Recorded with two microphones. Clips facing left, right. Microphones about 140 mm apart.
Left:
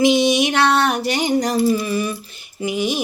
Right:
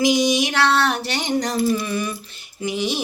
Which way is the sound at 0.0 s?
25° left (ahead or behind).